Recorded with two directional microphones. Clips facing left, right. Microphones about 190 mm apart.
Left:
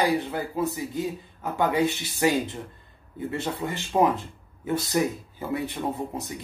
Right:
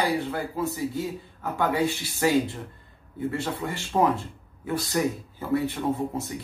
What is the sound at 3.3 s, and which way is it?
Speech, 20° left (ahead or behind).